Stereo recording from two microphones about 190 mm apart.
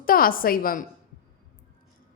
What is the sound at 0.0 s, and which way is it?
Speech, 50° left (ahead or behind).